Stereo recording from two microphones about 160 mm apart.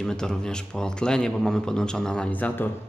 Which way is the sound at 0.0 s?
5° left (ahead or behind).